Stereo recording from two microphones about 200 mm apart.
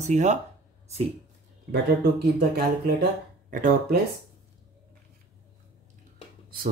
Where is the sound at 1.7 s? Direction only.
50° right (ahead or behind).